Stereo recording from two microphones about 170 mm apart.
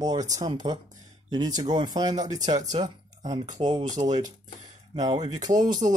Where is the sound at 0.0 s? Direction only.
20° right (ahead or behind).